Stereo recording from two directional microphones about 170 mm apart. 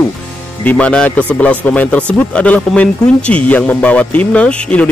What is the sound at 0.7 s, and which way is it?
A man's voice, 5° left (ahead or behind).